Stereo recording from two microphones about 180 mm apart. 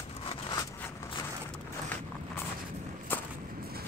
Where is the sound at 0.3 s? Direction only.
25° left (ahead or behind).